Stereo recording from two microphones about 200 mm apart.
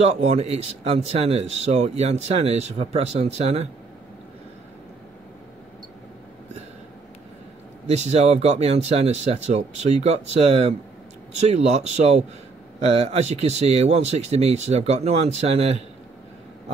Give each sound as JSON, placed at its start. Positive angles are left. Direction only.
{"t": 0.1, "sound": "speech", "side_deg": -30}
{"t": 7.8, "sound": "speech", "side_deg": -35}